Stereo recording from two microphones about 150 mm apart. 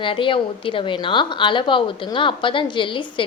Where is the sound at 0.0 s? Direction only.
35° left (ahead or behind).